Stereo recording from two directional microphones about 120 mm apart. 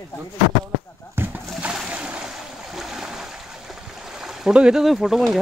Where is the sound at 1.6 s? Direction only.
10° right (ahead or behind).